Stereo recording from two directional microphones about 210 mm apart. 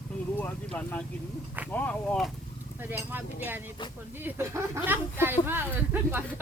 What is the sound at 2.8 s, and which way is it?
Speech, 10° right (ahead or behind).